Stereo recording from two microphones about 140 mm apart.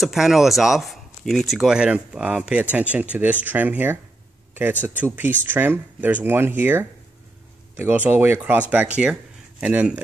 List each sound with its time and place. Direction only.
0.0 s speech: centre (ahead or behind)